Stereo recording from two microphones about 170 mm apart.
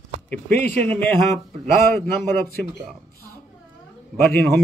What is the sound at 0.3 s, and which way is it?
A man's voice, 10° left (ahead or behind).